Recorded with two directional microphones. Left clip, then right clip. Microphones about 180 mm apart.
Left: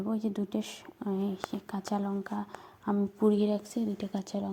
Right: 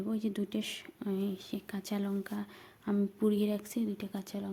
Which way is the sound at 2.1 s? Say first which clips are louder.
Left 3 dB; 25° right (ahead or behind).